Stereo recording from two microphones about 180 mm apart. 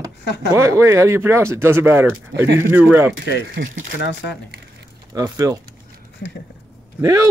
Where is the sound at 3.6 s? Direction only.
65° right (ahead or behind).